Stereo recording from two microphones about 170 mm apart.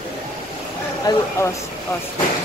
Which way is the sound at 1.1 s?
25° left (ahead or behind).